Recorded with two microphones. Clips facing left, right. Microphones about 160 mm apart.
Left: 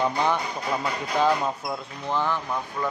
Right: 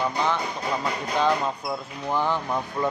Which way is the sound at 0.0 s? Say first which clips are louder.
Left 1 dB; 15° left (ahead or behind).